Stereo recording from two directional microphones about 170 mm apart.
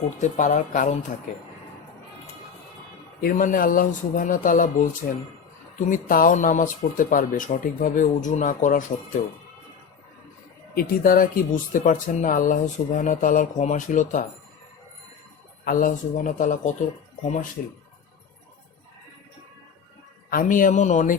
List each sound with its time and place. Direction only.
0.2 s speech: 45° left (ahead or behind)
3.2 s speech: 55° left (ahead or behind)
10.8 s speech: 55° left (ahead or behind)
15.6 s speech: 55° left (ahead or behind)
20.3 s speech: 50° left (ahead or behind)